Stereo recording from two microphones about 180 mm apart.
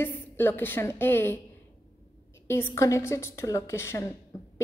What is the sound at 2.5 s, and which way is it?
Speech, 15° left (ahead or behind).